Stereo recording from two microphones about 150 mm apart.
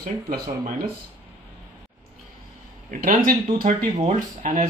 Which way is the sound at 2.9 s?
70° right (ahead or behind).